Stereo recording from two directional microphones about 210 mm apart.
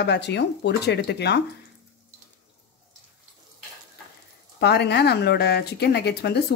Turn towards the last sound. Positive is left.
turn(degrees=50)  # may be behind; listen again after turning